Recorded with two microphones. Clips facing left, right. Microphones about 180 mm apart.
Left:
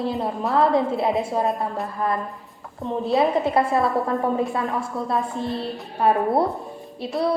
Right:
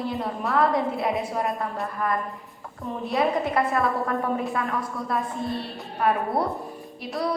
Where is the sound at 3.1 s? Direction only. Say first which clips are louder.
Left 4 dB; 30° left (ahead or behind).